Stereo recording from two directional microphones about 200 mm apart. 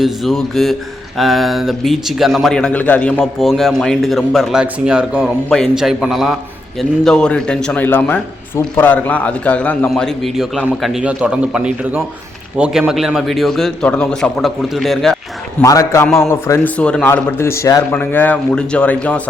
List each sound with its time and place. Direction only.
0.0 s a man's voice: centre (ahead or behind)
15.6 s a man's voice: 15° left (ahead or behind)